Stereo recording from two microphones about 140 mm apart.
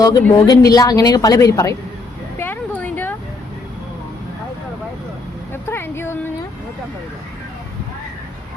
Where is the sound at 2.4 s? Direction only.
15° left (ahead or behind).